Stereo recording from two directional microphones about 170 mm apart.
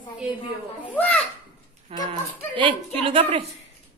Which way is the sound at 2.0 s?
30° right (ahead or behind).